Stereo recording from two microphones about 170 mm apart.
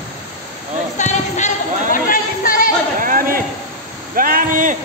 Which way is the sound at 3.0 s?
55° right (ahead or behind).